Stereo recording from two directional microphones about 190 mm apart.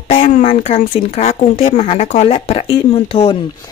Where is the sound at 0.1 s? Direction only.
30° left (ahead or behind).